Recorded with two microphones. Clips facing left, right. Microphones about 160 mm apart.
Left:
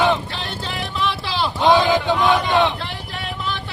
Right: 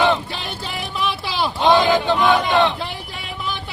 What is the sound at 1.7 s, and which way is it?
Crowd, 15° left (ahead or behind).